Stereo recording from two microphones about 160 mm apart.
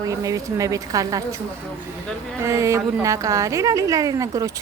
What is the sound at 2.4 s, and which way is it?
A woman's voice, 20° right (ahead or behind).